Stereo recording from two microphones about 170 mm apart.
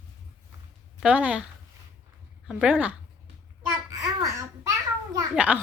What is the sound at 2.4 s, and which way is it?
Speech, 5° right (ahead or behind).